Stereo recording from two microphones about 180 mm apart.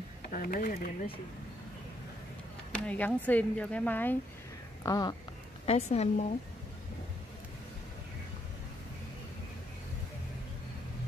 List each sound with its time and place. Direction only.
0.3 s speech: 50° left (ahead or behind)
2.7 s speech: 10° left (ahead or behind)
4.8 s speech: 20° left (ahead or behind)
5.7 s a woman's voice: 35° left (ahead or behind)